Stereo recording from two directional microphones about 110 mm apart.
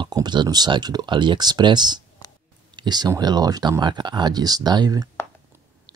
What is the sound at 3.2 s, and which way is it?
Speech, 40° right (ahead or behind).